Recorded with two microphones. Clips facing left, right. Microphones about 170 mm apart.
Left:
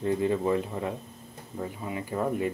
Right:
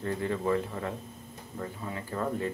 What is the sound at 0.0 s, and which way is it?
Speech, 15° left (ahead or behind).